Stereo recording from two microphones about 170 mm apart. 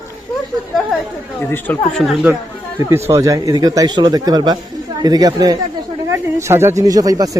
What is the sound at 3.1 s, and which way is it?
Speech, 20° right (ahead or behind).